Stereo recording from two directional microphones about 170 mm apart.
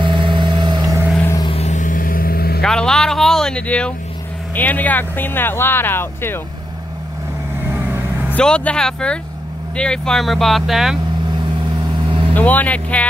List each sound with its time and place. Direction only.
0.0 s vehicle: 30° right (ahead or behind)
1.2 s vehicle: 20° left (ahead or behind)
1.5 s vehicle: 40° left (ahead or behind); by 2.6 s 65° left (ahead or behind)
2.6 s speech: 5° left (ahead or behind)
7.6 s vehicle: 10° right (ahead or behind)
8.4 s speech: 5° left (ahead or behind)
12.4 s speech: 10° left (ahead or behind)